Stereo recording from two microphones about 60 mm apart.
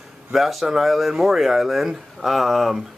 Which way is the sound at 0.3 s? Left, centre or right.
Centre.